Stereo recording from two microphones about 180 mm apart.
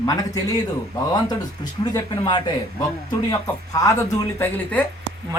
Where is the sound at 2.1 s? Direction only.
25° left (ahead or behind).